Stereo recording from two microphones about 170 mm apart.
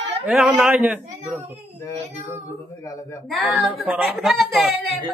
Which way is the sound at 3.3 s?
Centre (ahead or behind).